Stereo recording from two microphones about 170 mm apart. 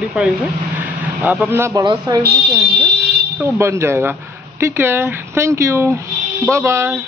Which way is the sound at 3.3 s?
15° right (ahead or behind).